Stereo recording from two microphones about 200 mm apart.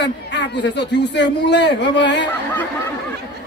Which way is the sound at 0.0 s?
60° left (ahead or behind).